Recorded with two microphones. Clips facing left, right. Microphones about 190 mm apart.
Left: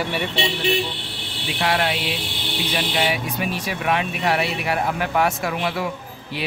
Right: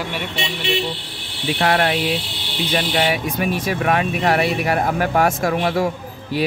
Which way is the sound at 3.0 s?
50° right (ahead or behind).